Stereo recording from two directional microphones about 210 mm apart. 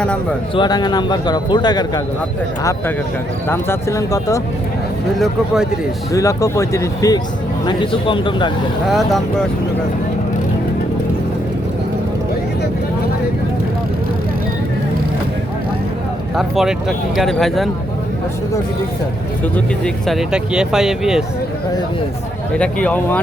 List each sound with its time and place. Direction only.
0.0 s speech: 5° left (ahead or behind)
0.5 s a man's voice: 20° left (ahead or behind)
3.5 s speech: 10° left (ahead or behind)
6.1 s a man's voice: 15° left (ahead or behind)
8.9 s speech: centre (ahead or behind)
16.3 s speech: centre (ahead or behind)
19.5 s speech: centre (ahead or behind)
22.5 s speech: 5° left (ahead or behind)